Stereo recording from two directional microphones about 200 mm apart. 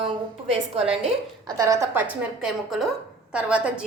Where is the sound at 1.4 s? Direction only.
20° right (ahead or behind).